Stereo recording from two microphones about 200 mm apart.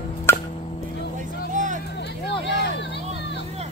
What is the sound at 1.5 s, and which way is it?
Vehicle, 40° right (ahead or behind).